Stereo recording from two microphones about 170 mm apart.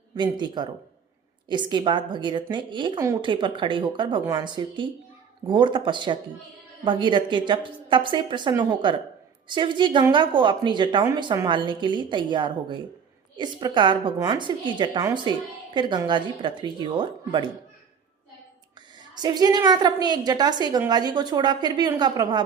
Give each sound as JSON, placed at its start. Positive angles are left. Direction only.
{"t": 0.2, "sound": "a woman's voice", "side_deg": -25}
{"t": 19.1, "sound": "a woman's voice", "side_deg": -25}